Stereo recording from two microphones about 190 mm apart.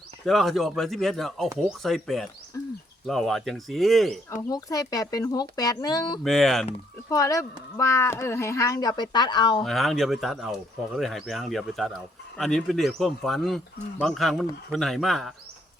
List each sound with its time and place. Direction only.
0.3 s speech: centre (ahead or behind)
4.4 s speech: 20° left (ahead or behind)
6.2 s speech: centre (ahead or behind)
7.1 s speech: 15° left (ahead or behind)
9.6 s speech: centre (ahead or behind)